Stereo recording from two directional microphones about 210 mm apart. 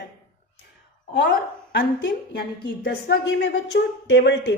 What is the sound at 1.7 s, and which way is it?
A woman's voice, 50° left (ahead or behind).